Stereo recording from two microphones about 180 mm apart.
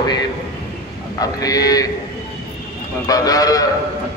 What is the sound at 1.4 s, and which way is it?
Speech, 20° left (ahead or behind).